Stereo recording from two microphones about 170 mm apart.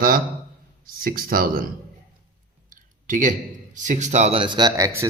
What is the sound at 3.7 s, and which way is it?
Speech, 50° right (ahead or behind).